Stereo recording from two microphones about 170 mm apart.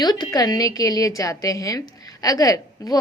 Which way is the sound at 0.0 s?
25° left (ahead or behind).